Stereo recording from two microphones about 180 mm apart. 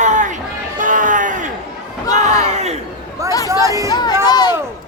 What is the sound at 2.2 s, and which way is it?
Crowd, 40° right (ahead or behind).